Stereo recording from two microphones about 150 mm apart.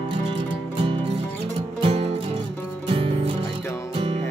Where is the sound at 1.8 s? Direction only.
40° right (ahead or behind).